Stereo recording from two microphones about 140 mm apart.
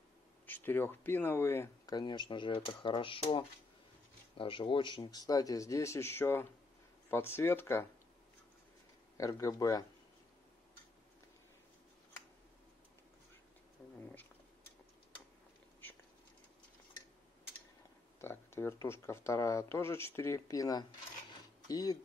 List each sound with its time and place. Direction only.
0.5 s speech: 15° left (ahead or behind)
1.9 s speech: 30° left (ahead or behind)
9.1 s speech: 25° left (ahead or behind)
18.2 s speech: 15° left (ahead or behind)